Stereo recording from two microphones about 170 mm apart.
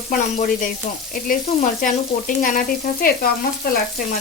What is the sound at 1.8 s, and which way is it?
Frying, 55° left (ahead or behind).